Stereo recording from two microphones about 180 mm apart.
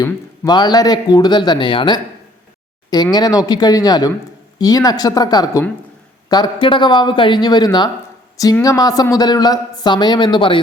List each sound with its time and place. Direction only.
0.0 s speech: 20° left (ahead or behind)